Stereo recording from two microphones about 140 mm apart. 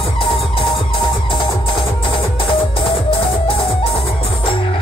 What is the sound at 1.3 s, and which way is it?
Music, 40° left (ahead or behind).